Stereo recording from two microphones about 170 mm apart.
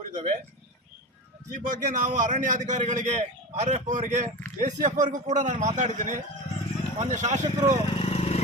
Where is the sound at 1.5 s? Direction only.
55° right (ahead or behind).